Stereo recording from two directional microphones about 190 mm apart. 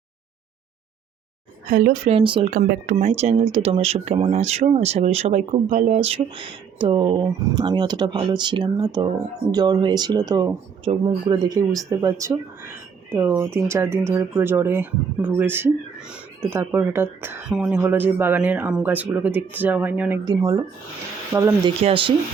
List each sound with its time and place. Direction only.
1.7 s speech: 45° right (ahead or behind); by 2.5 s 30° right (ahead or behind)
2.5 s speech: 45° right (ahead or behind)
2.9 s speech: 35° right (ahead or behind); by 20.1 s 10° right (ahead or behind)
20.2 s speech: 20° right (ahead or behind)
21.8 s speech: 30° right (ahead or behind)